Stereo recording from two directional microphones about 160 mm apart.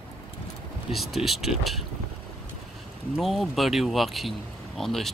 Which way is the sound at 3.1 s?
Centre (ahead or behind).